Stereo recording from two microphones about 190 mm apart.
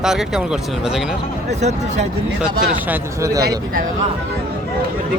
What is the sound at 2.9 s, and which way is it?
Speech, 15° right (ahead or behind).